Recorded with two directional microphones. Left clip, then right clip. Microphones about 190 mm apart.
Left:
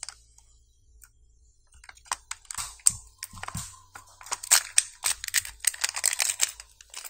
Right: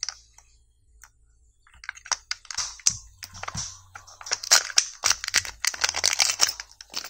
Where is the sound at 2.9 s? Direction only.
10° right (ahead or behind).